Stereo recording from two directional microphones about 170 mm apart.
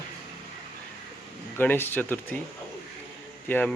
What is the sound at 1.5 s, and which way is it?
Speech, 10° left (ahead or behind).